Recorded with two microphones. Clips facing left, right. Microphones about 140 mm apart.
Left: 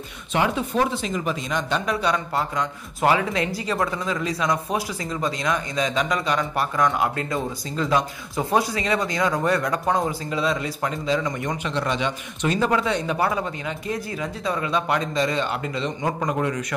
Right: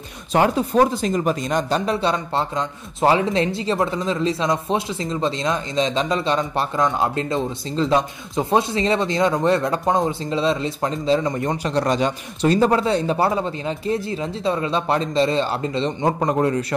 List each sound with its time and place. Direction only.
0.3 s speech: 40° right (ahead or behind)
1.9 s speech: 30° right (ahead or behind)